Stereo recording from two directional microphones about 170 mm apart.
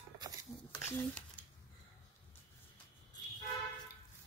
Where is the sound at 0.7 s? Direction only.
10° left (ahead or behind).